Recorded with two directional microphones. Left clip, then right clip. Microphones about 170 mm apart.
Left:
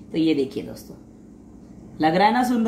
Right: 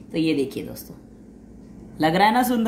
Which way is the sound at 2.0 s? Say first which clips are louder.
Even; 35° right (ahead or behind).